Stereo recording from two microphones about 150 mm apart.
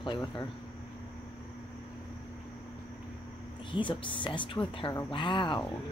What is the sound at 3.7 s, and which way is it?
Speech, 35° left (ahead or behind).